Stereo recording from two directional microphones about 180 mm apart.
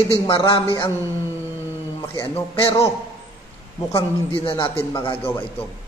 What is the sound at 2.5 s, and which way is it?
Speech, 20° left (ahead or behind).